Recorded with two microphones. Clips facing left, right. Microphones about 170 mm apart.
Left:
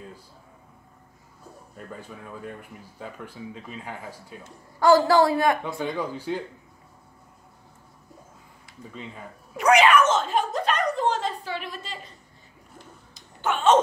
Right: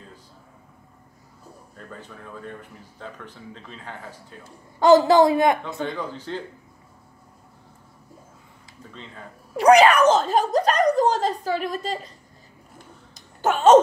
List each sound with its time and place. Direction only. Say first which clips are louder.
1.8 s speech: left 1 dB; 10° left (ahead or behind)
4.7 s a woman's voice: right 3 dB; 20° right (ahead or behind)
5.9 s speech: left 2 dB; 10° left (ahead or behind)
9.6 s speech: right 4 dB; 35° right (ahead or behind)
13.1 s a sound: right 4 dB; 40° right (ahead or behind)